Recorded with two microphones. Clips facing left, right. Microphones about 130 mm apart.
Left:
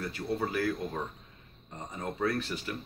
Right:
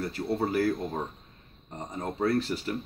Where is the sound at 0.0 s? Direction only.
35° right (ahead or behind).